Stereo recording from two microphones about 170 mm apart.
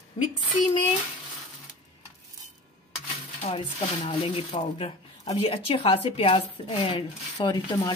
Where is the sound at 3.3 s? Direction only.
40° left (ahead or behind).